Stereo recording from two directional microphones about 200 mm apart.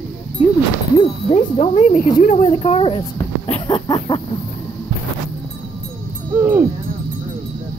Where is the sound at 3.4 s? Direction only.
25° left (ahead or behind).